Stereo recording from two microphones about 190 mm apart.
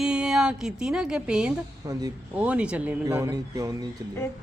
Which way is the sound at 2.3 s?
5° right (ahead or behind).